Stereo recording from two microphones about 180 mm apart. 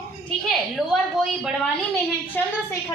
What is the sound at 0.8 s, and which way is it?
Speech, centre (ahead or behind).